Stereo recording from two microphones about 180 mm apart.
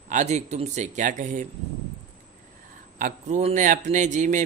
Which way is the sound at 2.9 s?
45° right (ahead or behind).